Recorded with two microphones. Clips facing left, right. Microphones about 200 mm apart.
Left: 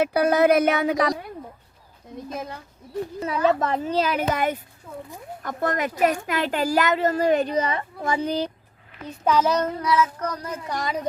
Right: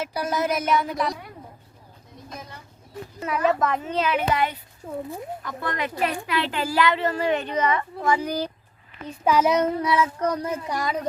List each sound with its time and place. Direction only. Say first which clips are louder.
0.0 s speech: left 8 dB; 60° left (ahead or behind); by 1.1 s 85° left
3.2 s a child's voice: even; 30° left (ahead or behind)
4.8 s speech: right 6 dB; 35° right (ahead or behind)
5.4 s a child's voice: left 7 dB; 45° left (ahead or behind); by 8.4 s 25° left (ahead or behind)
9.2 s child singing: right 1 dB; 5° right (ahead or behind)
9.5 s child singing: right 1 dB; 20° right (ahead or behind)
10.7 s child singing: left 2 dB; 5° right (ahead or behind)